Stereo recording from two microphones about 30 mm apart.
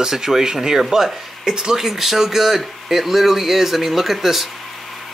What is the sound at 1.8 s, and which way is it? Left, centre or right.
Speech, centre.